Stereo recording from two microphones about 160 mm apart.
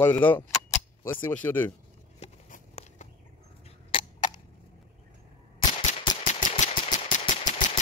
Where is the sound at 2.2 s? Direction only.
45° left (ahead or behind).